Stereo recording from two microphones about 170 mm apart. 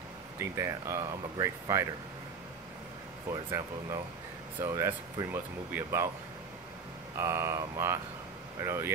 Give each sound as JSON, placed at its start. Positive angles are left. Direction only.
{"t": 0.4, "sound": "speech", "side_deg": -15}
{"t": 3.3, "sound": "speech", "side_deg": -20}
{"t": 7.2, "sound": "speech", "side_deg": -15}